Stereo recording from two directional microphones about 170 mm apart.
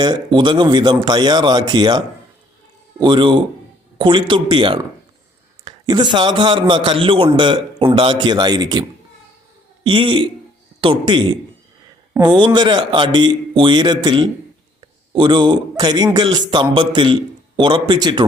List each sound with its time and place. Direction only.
0.0 s a man's voice: 25° right (ahead or behind)